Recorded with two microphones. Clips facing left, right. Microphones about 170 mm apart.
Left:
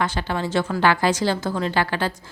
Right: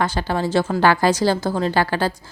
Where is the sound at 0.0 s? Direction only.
40° right (ahead or behind).